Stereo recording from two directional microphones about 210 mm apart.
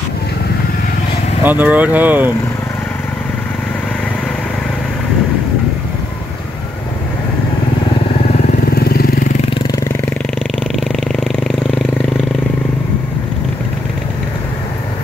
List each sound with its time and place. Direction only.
1.4 s speech: 10° right (ahead or behind)
8.7 s vehicle: 45° left (ahead or behind)
10.8 s a sound: centre (ahead or behind)